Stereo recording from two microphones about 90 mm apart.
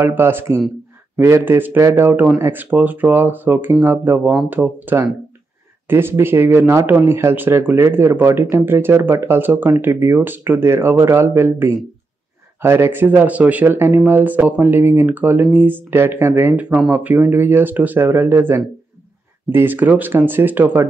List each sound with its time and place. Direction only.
0.0 s speech: 25° right (ahead or behind)